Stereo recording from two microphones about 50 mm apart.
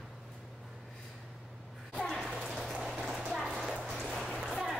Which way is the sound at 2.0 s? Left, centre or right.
Centre.